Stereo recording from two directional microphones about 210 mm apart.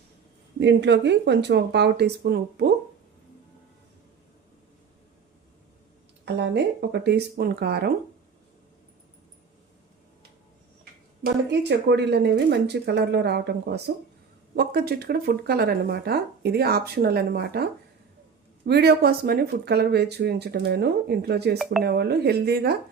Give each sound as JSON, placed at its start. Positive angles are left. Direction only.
{"t": 0.6, "sound": "speech", "side_deg": -55}
{"t": 6.2, "sound": "speech", "side_deg": -55}
{"t": 11.2, "sound": "speech", "side_deg": -55}